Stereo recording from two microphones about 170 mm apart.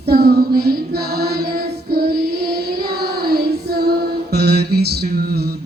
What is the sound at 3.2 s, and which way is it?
Music, 65° right (ahead or behind).